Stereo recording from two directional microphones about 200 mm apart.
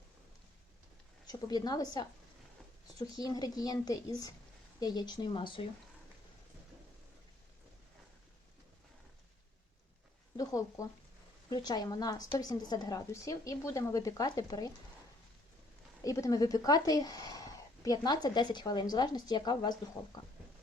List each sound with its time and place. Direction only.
1.3 s a woman's voice: 20° left (ahead or behind)
10.3 s a sound: 15° left (ahead or behind)
11.4 s a woman's voice: 20° left (ahead or behind)
16.0 s a woman's voice: 15° left (ahead or behind)